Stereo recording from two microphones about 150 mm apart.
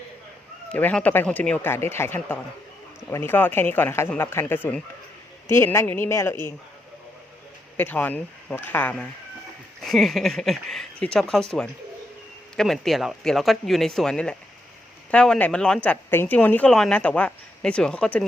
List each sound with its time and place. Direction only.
0.7 s speech: 10° left (ahead or behind)
7.8 s speech: 10° left (ahead or behind)
12.5 s speech: centre (ahead or behind)